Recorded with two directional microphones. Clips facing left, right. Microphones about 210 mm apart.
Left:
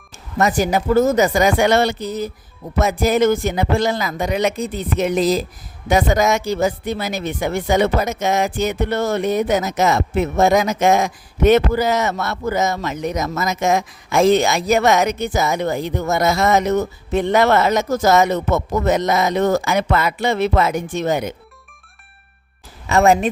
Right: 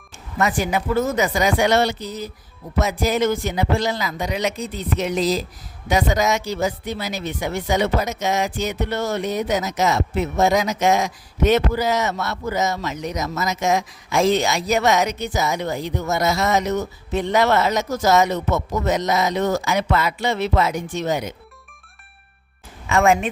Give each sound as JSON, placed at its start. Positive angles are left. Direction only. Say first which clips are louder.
{"t": 0.3, "sound": "speech", "louder": "left 4 dB", "side_deg": 40}
{"t": 22.9, "sound": "speech", "louder": "left 3 dB", "side_deg": 35}